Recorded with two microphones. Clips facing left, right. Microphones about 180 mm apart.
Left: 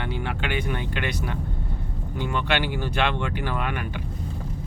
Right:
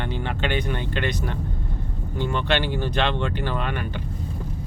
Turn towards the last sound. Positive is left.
turn(degrees=10)  # may be behind; listen again after turning